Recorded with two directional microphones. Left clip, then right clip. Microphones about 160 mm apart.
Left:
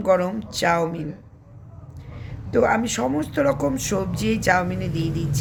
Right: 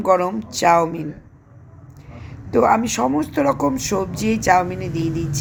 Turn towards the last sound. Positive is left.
turn(degrees=-10)  # may be behind; listen again after turning